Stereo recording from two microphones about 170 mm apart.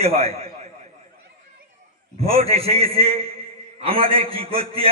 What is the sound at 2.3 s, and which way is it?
Speech, 35° right (ahead or behind).